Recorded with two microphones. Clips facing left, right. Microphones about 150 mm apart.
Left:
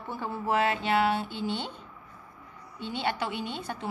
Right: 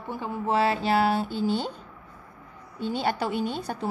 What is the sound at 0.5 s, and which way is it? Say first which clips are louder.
Speech: right 3 dB; 35° right (ahead or behind).